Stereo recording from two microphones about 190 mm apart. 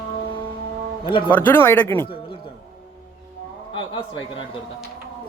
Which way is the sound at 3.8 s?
25° left (ahead or behind).